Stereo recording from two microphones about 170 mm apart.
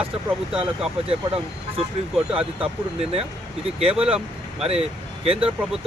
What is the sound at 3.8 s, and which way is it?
Speech, 35° right (ahead or behind).